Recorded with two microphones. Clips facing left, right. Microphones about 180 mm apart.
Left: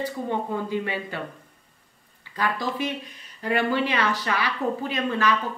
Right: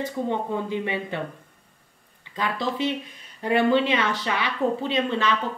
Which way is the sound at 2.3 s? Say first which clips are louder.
Even; 20° right (ahead or behind).